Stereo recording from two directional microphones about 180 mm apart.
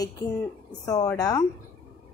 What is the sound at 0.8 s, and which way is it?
Speech, 20° left (ahead or behind).